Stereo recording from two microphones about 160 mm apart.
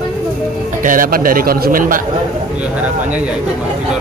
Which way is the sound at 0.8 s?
55° right (ahead or behind).